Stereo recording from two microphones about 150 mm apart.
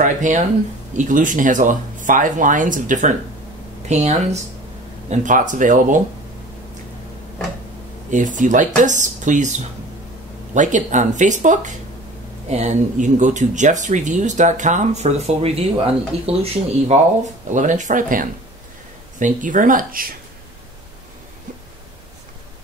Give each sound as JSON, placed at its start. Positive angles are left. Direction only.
{"t": 0.0, "sound": "speech", "side_deg": -55}
{"t": 3.9, "sound": "speech", "side_deg": -45}
{"t": 5.1, "sound": "speech", "side_deg": -60}
{"t": 8.1, "sound": "speech", "side_deg": -55}
{"t": 17.5, "sound": "speech", "side_deg": -55}